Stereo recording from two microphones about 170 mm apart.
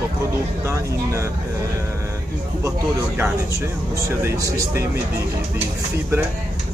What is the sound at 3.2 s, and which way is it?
Speech, 20° right (ahead or behind).